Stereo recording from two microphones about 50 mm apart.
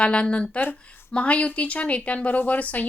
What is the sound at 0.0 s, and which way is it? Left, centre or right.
A woman's voice, left.